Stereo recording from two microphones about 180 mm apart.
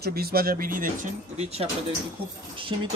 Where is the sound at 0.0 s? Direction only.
60° right (ahead or behind).